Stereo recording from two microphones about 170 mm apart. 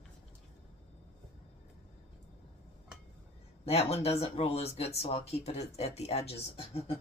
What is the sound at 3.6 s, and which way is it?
Speech, 35° left (ahead or behind).